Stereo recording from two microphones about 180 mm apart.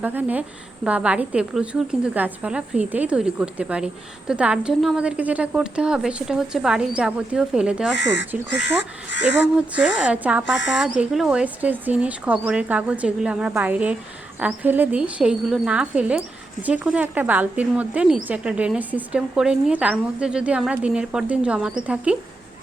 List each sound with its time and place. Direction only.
0.0 s a woman's voice: 10° right (ahead or behind)
7.9 s speech: 75° left (ahead or behind)
9.6 s speech: 5° right (ahead or behind)